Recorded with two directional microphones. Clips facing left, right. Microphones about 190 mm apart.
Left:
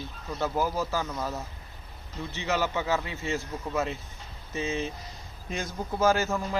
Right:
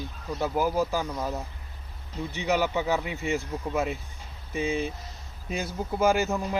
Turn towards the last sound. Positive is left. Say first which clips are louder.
# right 1 dB
turn(degrees=-15)  # may be behind; listen again after turning